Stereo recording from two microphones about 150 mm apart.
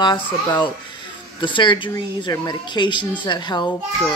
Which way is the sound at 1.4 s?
30° left (ahead or behind).